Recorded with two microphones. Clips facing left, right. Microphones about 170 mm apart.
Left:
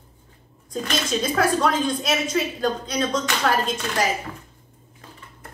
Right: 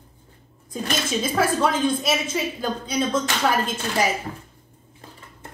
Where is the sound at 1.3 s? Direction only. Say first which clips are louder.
Left 1 dB; 5° right (ahead or behind).